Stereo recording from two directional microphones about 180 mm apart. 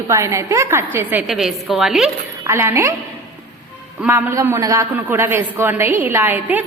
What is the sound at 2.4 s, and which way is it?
Speech, 15° right (ahead or behind).